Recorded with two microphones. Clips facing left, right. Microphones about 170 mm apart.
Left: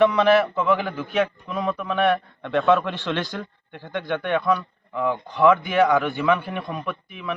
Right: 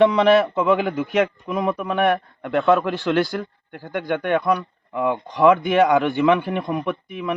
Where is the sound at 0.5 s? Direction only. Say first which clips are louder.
Right 3 dB; 15° right (ahead or behind).